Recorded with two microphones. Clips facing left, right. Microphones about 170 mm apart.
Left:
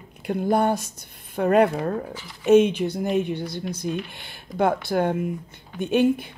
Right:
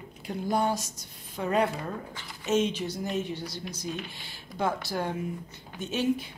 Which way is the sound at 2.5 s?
55° left (ahead or behind).